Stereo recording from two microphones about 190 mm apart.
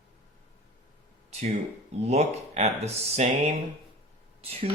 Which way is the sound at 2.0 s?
35° right (ahead or behind).